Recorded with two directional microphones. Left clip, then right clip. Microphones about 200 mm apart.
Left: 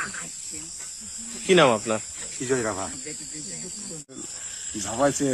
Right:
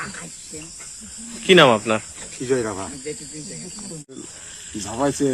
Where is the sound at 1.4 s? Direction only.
5° left (ahead or behind).